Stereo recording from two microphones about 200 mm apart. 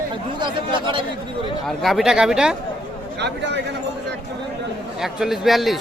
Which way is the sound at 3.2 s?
60° right (ahead or behind).